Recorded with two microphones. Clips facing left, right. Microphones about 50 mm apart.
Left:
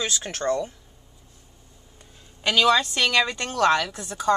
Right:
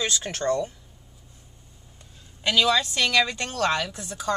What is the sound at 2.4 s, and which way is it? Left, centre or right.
A woman's voice, centre.